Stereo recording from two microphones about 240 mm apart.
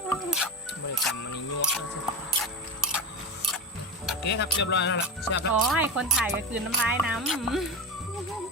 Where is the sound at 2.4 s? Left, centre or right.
Centre.